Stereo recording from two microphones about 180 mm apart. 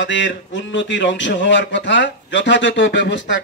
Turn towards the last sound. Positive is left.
turn(degrees=90)